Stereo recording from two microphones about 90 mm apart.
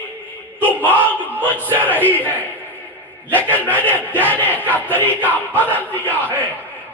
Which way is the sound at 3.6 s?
20° left (ahead or behind).